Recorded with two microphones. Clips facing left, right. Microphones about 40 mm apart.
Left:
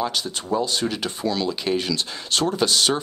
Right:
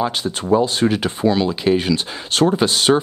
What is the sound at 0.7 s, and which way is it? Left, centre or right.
Speech, right.